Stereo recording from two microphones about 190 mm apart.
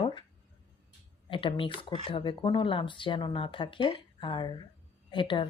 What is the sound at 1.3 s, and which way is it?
Speech, 25° left (ahead or behind).